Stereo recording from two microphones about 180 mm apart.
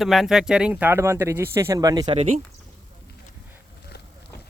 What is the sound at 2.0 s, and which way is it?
Speech, 35° right (ahead or behind).